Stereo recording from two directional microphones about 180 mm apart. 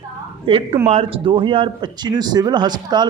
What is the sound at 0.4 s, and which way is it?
A woman's voice, 30° right (ahead or behind).